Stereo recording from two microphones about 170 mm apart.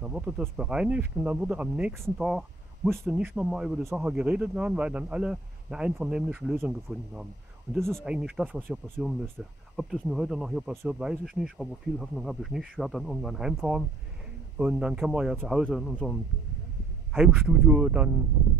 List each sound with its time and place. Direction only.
0.0 s speech: 5° right (ahead or behind)